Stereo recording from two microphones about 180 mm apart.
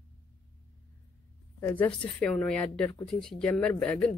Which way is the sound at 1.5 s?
10° left (ahead or behind).